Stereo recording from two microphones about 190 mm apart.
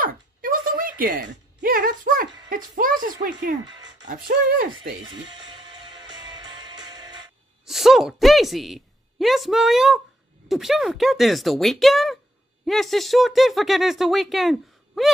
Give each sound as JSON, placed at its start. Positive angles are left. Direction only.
{"t": 0.0, "sound": "a sound", "side_deg": -45}
{"t": 1.6, "sound": "speech", "side_deg": -45}
{"t": 3.6, "sound": "music", "side_deg": -20}
{"t": 4.1, "sound": "speech", "side_deg": -55}
{"t": 5.9, "sound": "music", "side_deg": -20}
{"t": 7.6, "sound": "speech", "side_deg": 0}